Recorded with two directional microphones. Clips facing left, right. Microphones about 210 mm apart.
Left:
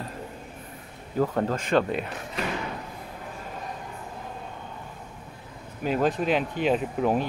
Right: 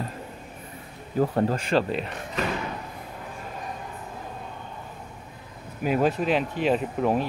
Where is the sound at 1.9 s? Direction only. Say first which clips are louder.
Even; 5° left (ahead or behind).